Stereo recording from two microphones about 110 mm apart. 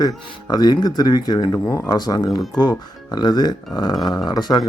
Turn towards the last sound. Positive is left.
turn(degrees=40)  # may be behind; listen again after turning